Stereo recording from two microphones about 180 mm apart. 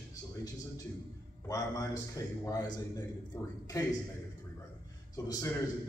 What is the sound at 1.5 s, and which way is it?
A man's voice, 20° left (ahead or behind).